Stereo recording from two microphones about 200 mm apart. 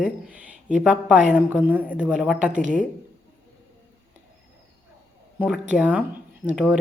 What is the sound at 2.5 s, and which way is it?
Speech, 40° right (ahead or behind).